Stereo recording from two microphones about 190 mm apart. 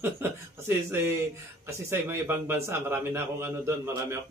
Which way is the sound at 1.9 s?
10° right (ahead or behind).